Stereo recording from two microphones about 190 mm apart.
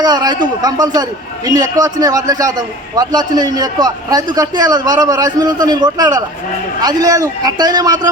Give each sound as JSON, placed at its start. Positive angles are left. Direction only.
{"t": 0.0, "sound": "a man's voice", "side_deg": -20}